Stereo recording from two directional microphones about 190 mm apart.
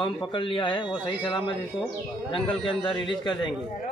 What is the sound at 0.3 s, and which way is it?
A man's voice, 25° left (ahead or behind).